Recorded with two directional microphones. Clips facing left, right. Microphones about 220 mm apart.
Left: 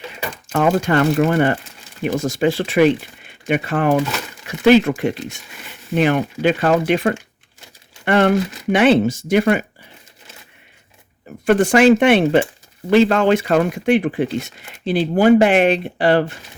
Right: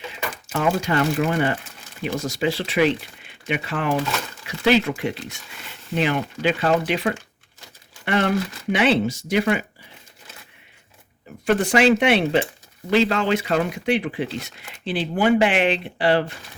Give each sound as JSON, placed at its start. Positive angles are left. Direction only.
{"t": 0.5, "sound": "speech", "side_deg": 50}
{"t": 11.3, "sound": "zipper", "side_deg": 50}
{"t": 11.6, "sound": "speech", "side_deg": 50}